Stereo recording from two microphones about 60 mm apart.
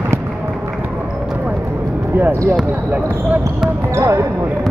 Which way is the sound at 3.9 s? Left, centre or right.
Right.